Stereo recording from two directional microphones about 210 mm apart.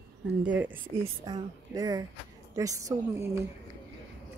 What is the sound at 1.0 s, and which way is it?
A woman's voice, 20° right (ahead or behind).